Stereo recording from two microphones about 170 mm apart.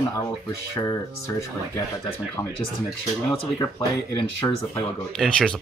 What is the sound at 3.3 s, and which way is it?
Speech, 20° left (ahead or behind).